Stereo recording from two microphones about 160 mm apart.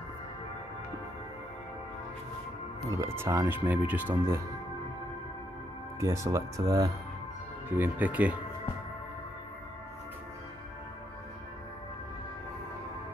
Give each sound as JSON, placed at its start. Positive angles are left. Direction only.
{"t": 2.8, "sound": "speech", "side_deg": -20}
{"t": 5.9, "sound": "speech", "side_deg": -20}
{"t": 7.7, "sound": "speech", "side_deg": -10}